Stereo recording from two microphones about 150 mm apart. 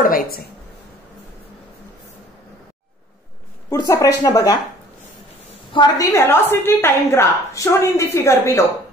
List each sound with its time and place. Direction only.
0.0 s a woman's voice: 80° left
3.7 s speech: 25° left (ahead or behind)
5.7 s a woman's voice: 25° left (ahead or behind)